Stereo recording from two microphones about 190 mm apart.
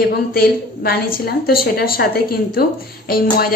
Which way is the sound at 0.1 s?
55° left (ahead or behind).